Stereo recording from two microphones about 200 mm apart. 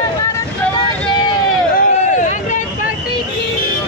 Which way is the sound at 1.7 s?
40° left (ahead or behind).